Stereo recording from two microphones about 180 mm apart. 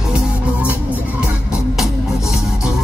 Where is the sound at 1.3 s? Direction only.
5° right (ahead or behind).